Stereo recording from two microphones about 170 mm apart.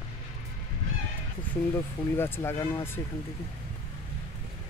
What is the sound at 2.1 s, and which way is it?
Speech, 15° left (ahead or behind).